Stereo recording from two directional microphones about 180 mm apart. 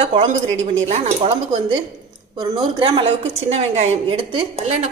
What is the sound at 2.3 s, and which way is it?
A woman's voice, 25° right (ahead or behind).